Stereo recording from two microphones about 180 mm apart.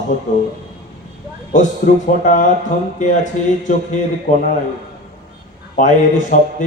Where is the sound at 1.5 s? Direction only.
45° left (ahead or behind).